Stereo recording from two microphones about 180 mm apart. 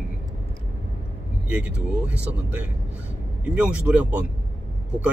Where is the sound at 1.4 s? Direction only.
5° right (ahead or behind).